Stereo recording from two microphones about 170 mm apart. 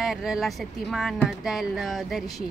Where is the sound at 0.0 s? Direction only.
Centre (ahead or behind).